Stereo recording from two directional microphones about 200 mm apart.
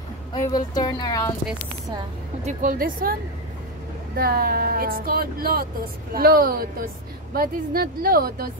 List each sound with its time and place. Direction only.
0.3 s speech: 20° left (ahead or behind)
2.4 s speech: 40° right (ahead or behind)